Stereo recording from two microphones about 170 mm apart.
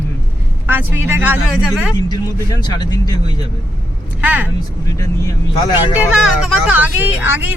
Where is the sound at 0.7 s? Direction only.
10° right (ahead or behind).